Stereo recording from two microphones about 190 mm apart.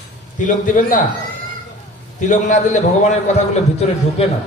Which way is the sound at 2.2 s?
40° left (ahead or behind).